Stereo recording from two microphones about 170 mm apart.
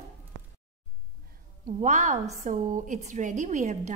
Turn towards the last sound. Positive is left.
turn(degrees=-45)  # may be behind; listen again after turning